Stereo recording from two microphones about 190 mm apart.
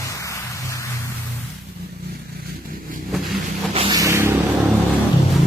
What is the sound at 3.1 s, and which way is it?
Vehicle, centre (ahead or behind).